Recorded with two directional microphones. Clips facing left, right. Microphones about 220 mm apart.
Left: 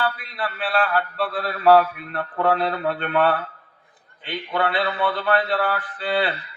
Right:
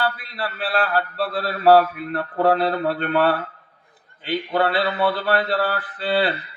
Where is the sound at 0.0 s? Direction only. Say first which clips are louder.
Right 1 dB; 35° right (ahead or behind).